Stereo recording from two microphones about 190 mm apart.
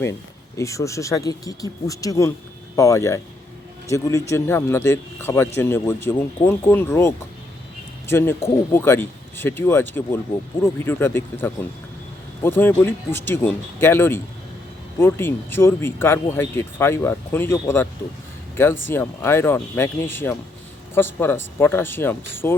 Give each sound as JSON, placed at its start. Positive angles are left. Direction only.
{"t": 0.0, "sound": "speech", "side_deg": 15}